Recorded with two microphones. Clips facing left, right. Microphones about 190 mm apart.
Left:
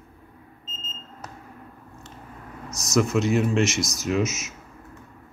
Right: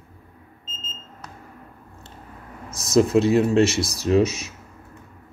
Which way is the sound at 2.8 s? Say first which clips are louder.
Right 5 dB; 30° right (ahead or behind).